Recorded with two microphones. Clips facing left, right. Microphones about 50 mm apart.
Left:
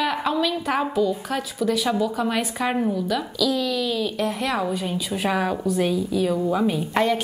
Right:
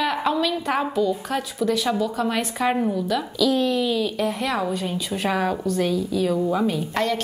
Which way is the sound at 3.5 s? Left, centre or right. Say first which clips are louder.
Right 3 dB; right.